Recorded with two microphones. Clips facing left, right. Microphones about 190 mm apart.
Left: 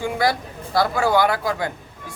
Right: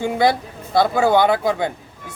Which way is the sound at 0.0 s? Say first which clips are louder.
Right 4 dB; 25° right (ahead or behind).